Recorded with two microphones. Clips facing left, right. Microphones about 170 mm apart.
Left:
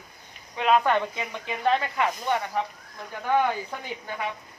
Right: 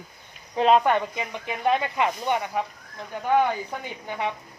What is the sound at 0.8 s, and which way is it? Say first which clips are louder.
Speech: right 1 dB; 15° right (ahead or behind).